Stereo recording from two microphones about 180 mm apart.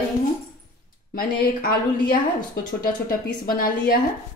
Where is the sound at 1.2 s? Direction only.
55° left (ahead or behind).